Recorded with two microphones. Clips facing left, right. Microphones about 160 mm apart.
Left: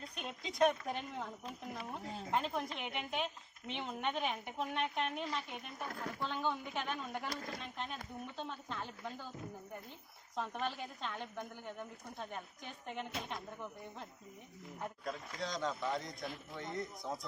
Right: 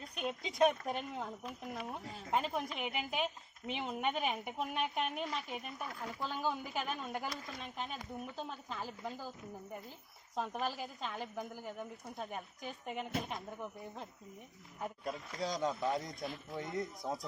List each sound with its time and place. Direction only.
0.2 s a woman's voice: centre (ahead or behind)
10.3 s a woman's voice: 5° right (ahead or behind)
15.6 s a man's voice: 20° right (ahead or behind)
16.7 s a woman's voice: centre (ahead or behind)